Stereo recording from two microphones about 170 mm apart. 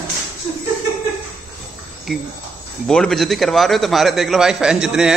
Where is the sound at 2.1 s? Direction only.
Centre (ahead or behind).